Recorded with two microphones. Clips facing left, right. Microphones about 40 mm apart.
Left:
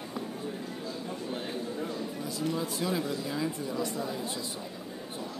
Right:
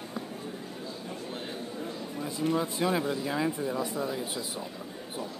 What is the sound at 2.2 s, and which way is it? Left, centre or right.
Speech, right.